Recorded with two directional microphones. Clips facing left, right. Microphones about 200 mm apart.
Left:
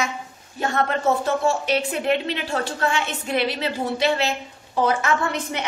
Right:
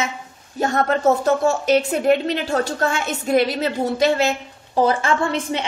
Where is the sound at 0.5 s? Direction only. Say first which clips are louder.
Right 4 dB; 40° right (ahead or behind).